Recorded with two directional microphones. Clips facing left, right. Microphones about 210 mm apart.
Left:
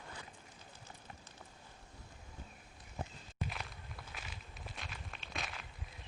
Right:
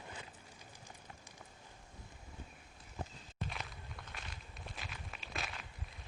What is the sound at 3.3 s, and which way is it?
Walk, centre (ahead or behind).